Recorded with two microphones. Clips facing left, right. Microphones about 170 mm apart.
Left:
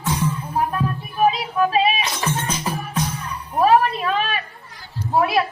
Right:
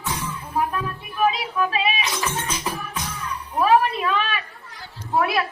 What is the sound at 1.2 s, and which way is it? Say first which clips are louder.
Child singing: left 3 dB; 35° left (ahead or behind).